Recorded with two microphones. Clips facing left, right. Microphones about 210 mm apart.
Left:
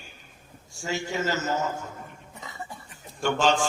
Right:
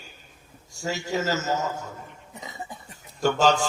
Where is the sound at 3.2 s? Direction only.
40° right (ahead or behind).